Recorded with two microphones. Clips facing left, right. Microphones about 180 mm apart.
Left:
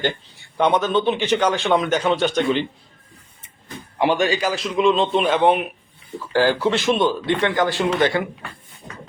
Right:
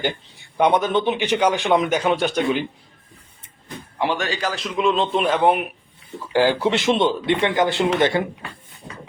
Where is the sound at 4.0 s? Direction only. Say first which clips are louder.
Left 4 dB; 15° left (ahead or behind).